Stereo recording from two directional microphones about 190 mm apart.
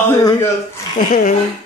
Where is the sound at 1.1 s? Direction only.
50° left (ahead or behind).